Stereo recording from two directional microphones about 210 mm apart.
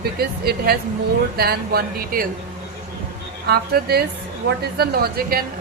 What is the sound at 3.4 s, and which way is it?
A woman's voice, 50° right (ahead or behind).